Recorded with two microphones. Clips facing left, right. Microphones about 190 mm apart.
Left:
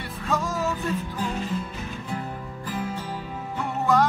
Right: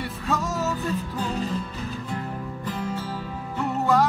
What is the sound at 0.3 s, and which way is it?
Music, centre (ahead or behind).